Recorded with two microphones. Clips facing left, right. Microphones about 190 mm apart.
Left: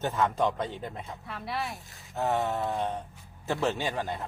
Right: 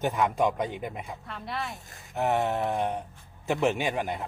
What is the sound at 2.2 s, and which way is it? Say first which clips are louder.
A man's voice: right 2 dB; 20° right (ahead or behind).